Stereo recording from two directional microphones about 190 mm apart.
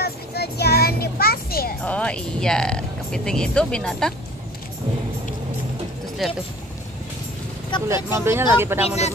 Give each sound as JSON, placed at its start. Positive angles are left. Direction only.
{"t": 0.0, "sound": "child singing", "side_deg": 60}
{"t": 1.9, "sound": "speech", "side_deg": 5}
{"t": 6.2, "sound": "speech", "side_deg": 0}
{"t": 7.9, "sound": "speech", "side_deg": -15}
{"t": 8.8, "sound": "speech", "side_deg": 35}